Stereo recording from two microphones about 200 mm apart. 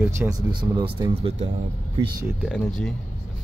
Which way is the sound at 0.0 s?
15° right (ahead or behind).